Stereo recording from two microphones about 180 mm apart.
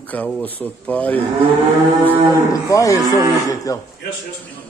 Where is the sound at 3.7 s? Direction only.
20° left (ahead or behind).